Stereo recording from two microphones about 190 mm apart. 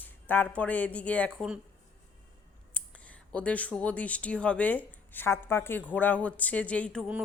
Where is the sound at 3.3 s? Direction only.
5° left (ahead or behind).